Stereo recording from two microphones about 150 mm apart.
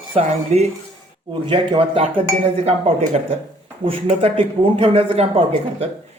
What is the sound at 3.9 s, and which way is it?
Speech, 40° right (ahead or behind).